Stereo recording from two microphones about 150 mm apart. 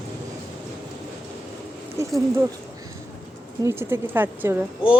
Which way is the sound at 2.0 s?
20° right (ahead or behind).